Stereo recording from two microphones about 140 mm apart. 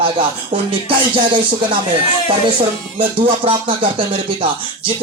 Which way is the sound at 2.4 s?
40° right (ahead or behind).